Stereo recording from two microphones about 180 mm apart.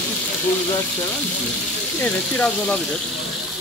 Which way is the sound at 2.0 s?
5° left (ahead or behind).